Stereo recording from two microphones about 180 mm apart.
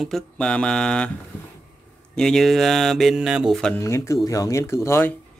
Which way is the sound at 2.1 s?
5° left (ahead or behind).